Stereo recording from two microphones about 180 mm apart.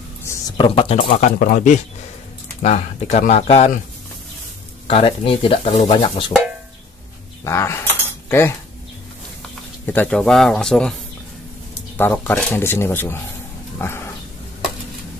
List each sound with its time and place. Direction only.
0.2 s a sound: 15° left (ahead or behind)
0.6 s speech: 35° left (ahead or behind)
4.8 s speech: 30° left (ahead or behind)
7.4 s keys jangling: 15° left (ahead or behind)
9.8 s a man's voice: 10° left (ahead or behind)
12.0 s speech: 10° left (ahead or behind)
13.7 s pig: 15° left (ahead or behind)